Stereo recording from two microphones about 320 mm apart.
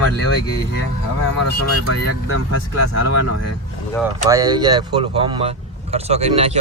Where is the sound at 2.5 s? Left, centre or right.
Left.